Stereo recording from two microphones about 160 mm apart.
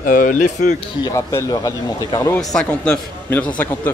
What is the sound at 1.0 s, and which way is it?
A man's voice, 20° left (ahead or behind).